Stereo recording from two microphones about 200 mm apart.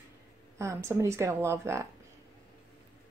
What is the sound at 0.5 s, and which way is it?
Speech, 15° right (ahead or behind).